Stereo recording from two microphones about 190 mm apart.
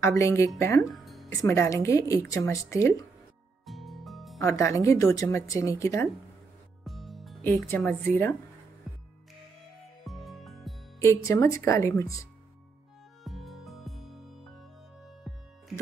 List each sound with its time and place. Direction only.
0.0 s speech: 15° left (ahead or behind)
0.9 s music: centre (ahead or behind)
1.4 s speech: 15° left (ahead or behind)
3.6 s music: centre (ahead or behind)
4.4 s speech: 15° left (ahead or behind)
6.8 s music: centre (ahead or behind)
7.4 s speech: 10° left (ahead or behind)
10.0 s music: centre (ahead or behind)
11.0 s speech: 15° left (ahead or behind)
13.2 s music: centre (ahead or behind)